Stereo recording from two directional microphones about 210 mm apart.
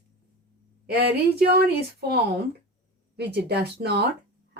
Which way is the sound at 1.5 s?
50° right (ahead or behind).